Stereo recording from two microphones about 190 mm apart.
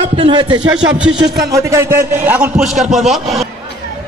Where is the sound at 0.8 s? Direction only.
5° right (ahead or behind).